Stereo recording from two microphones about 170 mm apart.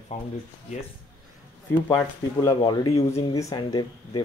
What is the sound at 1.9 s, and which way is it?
Speech, 25° left (ahead or behind).